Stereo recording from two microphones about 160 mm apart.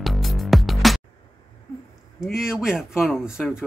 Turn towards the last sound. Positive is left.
turn(degrees=-5)  # may be behind; listen again after turning